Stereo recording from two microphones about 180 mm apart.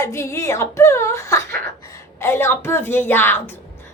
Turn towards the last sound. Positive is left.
turn(degrees=10)  # may be behind; listen again after turning